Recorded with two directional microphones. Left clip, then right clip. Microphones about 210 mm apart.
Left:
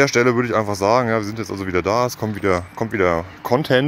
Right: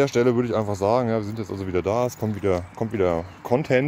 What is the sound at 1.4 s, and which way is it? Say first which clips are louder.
Speech: left 4 dB; 30° left (ahead or behind).